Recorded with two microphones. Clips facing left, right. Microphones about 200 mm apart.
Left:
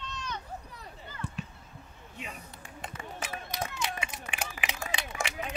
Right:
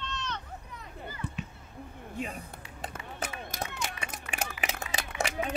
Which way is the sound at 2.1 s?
45° right (ahead or behind).